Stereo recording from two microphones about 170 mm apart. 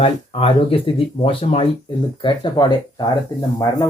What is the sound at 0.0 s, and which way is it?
Speech, 35° left (ahead or behind).